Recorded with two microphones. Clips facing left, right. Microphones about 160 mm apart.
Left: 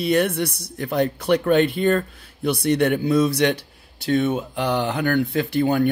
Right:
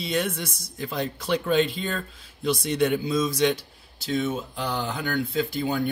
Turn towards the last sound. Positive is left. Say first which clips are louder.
# left 6 dB
turn(degrees=60)  # may be behind; listen again after turning